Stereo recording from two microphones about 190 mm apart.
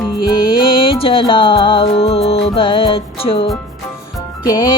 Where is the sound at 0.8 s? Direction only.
25° left (ahead or behind).